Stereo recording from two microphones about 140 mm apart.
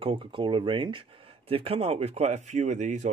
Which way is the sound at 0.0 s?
40° right (ahead or behind).